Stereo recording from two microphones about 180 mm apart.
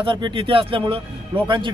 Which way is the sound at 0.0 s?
30° right (ahead or behind).